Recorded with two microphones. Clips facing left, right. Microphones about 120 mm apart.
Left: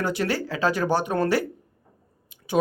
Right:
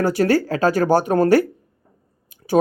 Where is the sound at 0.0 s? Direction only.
45° right (ahead or behind).